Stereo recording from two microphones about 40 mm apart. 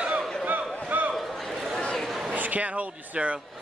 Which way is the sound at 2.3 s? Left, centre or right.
Right.